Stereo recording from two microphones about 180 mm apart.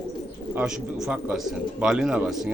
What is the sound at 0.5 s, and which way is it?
Speech, 5° right (ahead or behind).